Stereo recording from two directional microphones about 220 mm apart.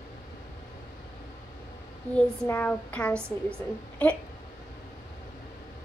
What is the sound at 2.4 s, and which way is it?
Speech, 10° left (ahead or behind).